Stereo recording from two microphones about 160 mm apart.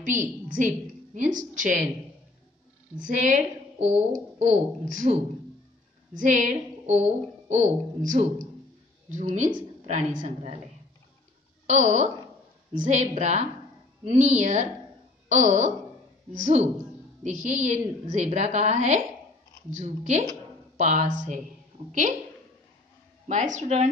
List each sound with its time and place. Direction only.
0.0 s a woman's voice: 50° right (ahead or behind)
3.0 s a woman's voice: 50° right (ahead or behind)
11.6 s a woman's voice: 50° right (ahead or behind)
23.2 s a woman's voice: 50° right (ahead or behind)